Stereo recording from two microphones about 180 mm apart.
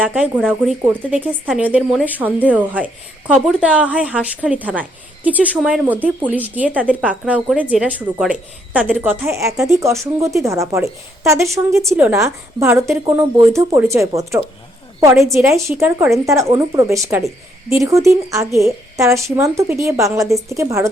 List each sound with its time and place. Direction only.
0.0 s speech: 5° right (ahead or behind)